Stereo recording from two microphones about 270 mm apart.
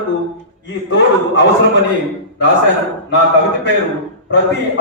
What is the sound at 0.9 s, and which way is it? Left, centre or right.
Chuckle, left.